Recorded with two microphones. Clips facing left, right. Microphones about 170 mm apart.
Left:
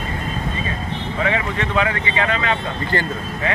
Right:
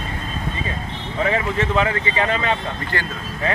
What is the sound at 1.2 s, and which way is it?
Speech, 35° right (ahead or behind).